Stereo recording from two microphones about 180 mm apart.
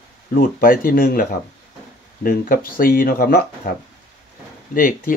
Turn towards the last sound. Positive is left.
turn(degrees=50)  # may be behind; listen again after turning